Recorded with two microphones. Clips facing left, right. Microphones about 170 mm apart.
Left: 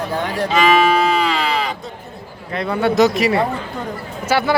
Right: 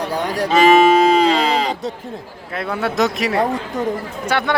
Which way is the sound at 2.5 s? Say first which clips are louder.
Left 4 dB; centre (ahead or behind).